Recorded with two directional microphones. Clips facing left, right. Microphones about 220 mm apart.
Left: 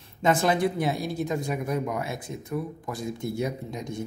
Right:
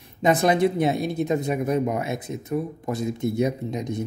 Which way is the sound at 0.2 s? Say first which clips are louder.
Right 4 dB; 20° right (ahead or behind).